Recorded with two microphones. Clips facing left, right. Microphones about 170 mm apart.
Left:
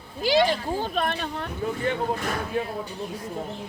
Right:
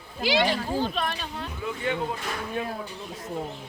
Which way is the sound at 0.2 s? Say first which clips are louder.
Left 3 dB; 45° left (ahead or behind).